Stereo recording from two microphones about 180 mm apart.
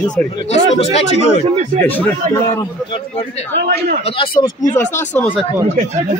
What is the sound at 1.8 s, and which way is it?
Speech, 10° left (ahead or behind).